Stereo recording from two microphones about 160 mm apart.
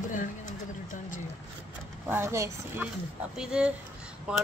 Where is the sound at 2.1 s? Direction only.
15° right (ahead or behind).